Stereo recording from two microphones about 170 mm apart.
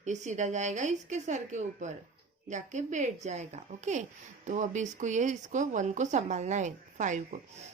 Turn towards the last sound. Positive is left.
turn(degrees=-45)  # may be behind; listen again after turning